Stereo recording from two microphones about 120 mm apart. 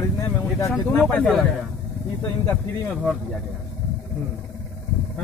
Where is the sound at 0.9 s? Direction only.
10° left (ahead or behind).